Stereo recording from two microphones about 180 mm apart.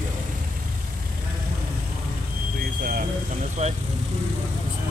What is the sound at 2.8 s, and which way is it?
Vehicle, 45° right (ahead or behind).